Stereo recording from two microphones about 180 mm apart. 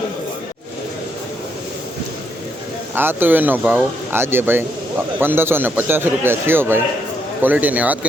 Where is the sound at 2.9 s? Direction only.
10° right (ahead or behind).